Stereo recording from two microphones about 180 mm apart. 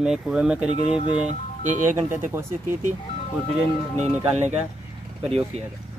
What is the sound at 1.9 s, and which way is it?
Speech, 15° right (ahead or behind).